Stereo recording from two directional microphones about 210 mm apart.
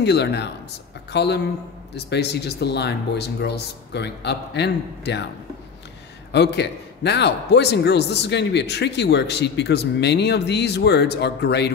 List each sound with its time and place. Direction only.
0.0 s a man's voice: 55° left (ahead or behind)
6.3 s a man's voice: 55° left (ahead or behind)